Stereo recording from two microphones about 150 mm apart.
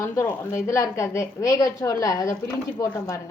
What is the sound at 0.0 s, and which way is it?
A woman's voice, 20° left (ahead or behind).